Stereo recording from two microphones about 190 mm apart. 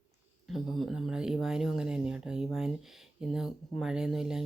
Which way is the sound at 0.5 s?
Centre (ahead or behind).